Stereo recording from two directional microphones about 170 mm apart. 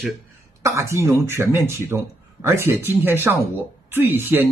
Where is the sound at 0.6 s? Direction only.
15° right (ahead or behind).